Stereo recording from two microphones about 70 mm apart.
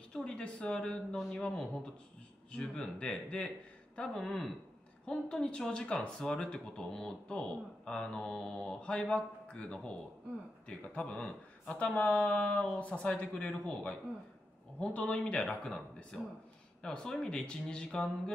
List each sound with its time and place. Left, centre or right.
0.1 s a man's voice: centre